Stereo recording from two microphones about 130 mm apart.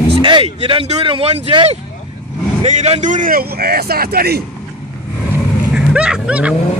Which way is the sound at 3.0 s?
80° right.